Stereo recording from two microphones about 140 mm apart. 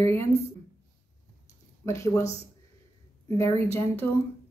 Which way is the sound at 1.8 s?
20° left (ahead or behind).